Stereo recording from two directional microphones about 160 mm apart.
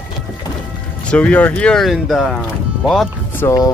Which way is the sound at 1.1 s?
10° left (ahead or behind).